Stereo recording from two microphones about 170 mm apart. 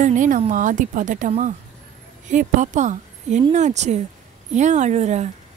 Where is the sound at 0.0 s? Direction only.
50° right (ahead or behind).